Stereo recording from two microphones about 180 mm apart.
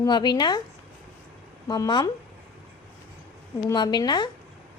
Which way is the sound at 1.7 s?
25° left (ahead or behind).